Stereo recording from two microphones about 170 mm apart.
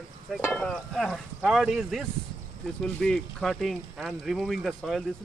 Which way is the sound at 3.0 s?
Centre (ahead or behind).